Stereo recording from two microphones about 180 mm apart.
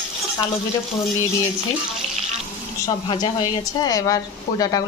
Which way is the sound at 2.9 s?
25° left (ahead or behind).